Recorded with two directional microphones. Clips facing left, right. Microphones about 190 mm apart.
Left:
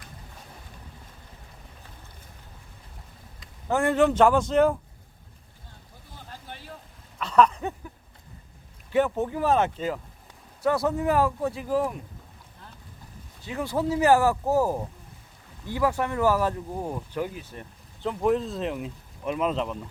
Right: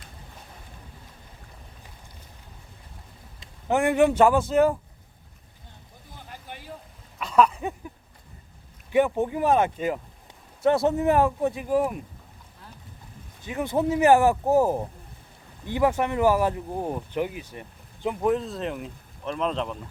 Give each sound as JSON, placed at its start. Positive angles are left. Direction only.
{"t": 3.4, "sound": "a man's voice", "side_deg": -20}
{"t": 6.1, "sound": "a sound", "side_deg": -15}
{"t": 8.9, "sound": "speech", "side_deg": -15}
{"t": 10.6, "sound": "speech", "side_deg": -25}
{"t": 13.4, "sound": "speech", "side_deg": -20}
{"t": 18.3, "sound": "speech", "side_deg": 0}